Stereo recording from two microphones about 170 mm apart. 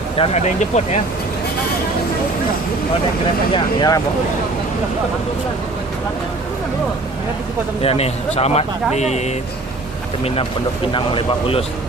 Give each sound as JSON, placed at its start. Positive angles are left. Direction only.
{"t": 0.2, "sound": "speech", "side_deg": 40}
{"t": 3.5, "sound": "speech", "side_deg": 25}
{"t": 7.8, "sound": "speech", "side_deg": 35}
{"t": 10.9, "sound": "speech", "side_deg": 30}